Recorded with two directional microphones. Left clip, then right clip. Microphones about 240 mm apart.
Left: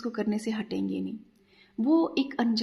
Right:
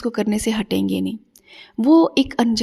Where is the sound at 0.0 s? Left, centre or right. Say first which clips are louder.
Right 10 dB; right.